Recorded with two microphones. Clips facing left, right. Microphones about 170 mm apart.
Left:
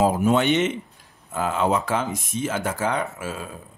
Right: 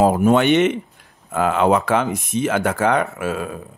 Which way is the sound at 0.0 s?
55° right (ahead or behind).